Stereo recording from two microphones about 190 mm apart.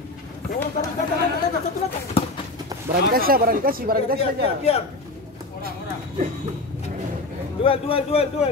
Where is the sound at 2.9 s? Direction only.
50° right (ahead or behind).